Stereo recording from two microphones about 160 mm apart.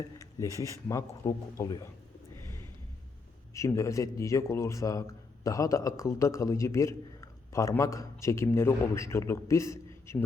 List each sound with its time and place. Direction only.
0.3 s a man's voice: 20° left (ahead or behind)
3.5 s a man's voice: 20° left (ahead or behind)